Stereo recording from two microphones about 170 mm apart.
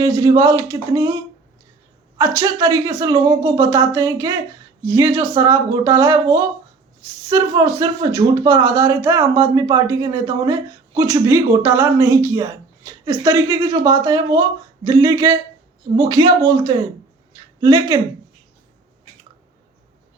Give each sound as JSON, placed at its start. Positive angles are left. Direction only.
{"t": 0.0, "sound": "speech", "side_deg": -20}
{"t": 2.1, "sound": "speech", "side_deg": -20}
{"t": 17.3, "sound": "a sound", "side_deg": -25}